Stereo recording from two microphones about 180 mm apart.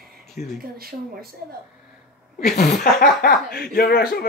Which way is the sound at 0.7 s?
55° right (ahead or behind).